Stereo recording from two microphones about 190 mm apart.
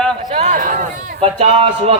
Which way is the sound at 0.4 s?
45° right (ahead or behind).